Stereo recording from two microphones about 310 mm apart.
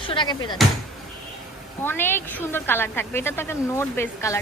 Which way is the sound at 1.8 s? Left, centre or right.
Centre.